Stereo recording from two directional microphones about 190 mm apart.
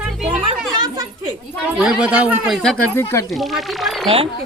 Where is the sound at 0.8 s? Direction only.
20° right (ahead or behind).